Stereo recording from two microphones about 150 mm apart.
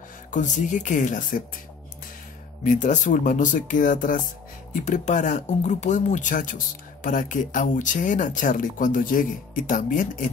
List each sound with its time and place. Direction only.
0.3 s speech: 55° left (ahead or behind)
2.6 s speech: 55° left (ahead or behind)